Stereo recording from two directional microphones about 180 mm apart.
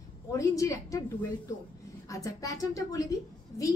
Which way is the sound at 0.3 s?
20° left (ahead or behind).